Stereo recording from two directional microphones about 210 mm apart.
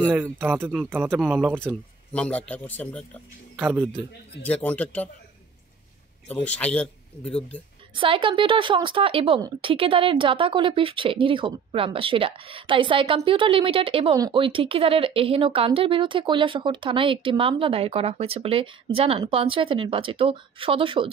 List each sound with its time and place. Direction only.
0.1 s speech: 10° right (ahead or behind)
2.1 s speech: 5° left (ahead or behind)
3.5 s speech: 10° right (ahead or behind)
4.6 s a man's voice: 5° left (ahead or behind)
6.2 s speech: 5° left (ahead or behind)
7.9 s a woman's voice: 25° right (ahead or behind)